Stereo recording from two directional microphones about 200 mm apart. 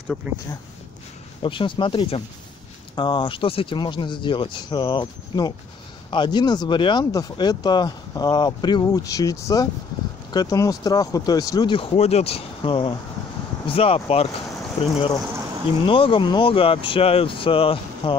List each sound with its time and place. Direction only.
1.4 s speech: 25° left (ahead or behind)